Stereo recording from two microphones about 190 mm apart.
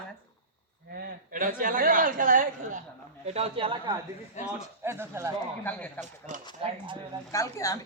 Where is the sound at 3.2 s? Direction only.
30° right (ahead or behind).